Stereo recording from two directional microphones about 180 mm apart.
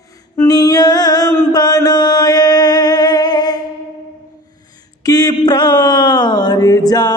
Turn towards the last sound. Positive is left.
turn(degrees=20)  # may be behind; listen again after turning